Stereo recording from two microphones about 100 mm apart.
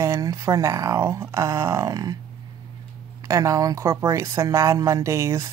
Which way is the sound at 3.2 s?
30° right (ahead or behind).